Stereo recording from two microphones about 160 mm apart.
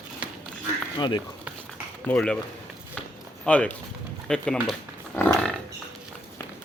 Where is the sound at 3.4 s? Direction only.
10° left (ahead or behind).